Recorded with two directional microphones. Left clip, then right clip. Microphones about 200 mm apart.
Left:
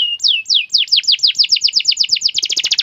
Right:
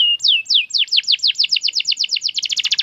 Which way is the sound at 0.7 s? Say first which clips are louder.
Left 3 dB; 5° right (ahead or behind).